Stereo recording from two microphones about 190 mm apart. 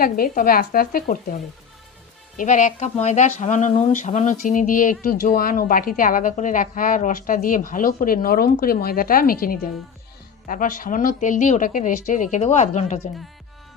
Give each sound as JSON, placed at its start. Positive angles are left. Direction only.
{"t": 0.0, "sound": "speech", "side_deg": 50}
{"t": 2.4, "sound": "speech", "side_deg": 40}